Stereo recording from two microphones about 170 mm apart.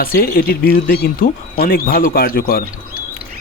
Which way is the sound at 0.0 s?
60° left (ahead or behind).